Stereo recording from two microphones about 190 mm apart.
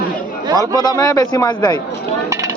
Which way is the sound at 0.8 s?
20° left (ahead or behind).